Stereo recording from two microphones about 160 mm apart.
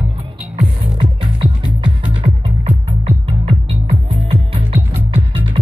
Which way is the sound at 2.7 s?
45° right (ahead or behind).